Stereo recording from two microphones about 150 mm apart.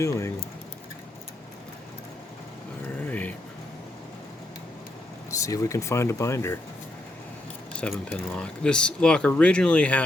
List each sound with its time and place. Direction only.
0.0 s speech: 20° left (ahead or behind)
3.1 s a sound: 10° left (ahead or behind)
5.4 s speech: 20° left (ahead or behind)
7.7 s speech: 5° left (ahead or behind)